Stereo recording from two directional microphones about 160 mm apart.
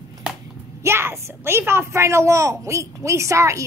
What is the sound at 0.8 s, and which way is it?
A woman's voice, 15° right (ahead or behind).